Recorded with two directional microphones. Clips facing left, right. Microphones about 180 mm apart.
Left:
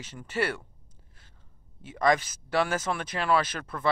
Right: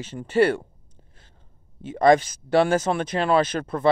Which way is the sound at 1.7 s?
30° right (ahead or behind).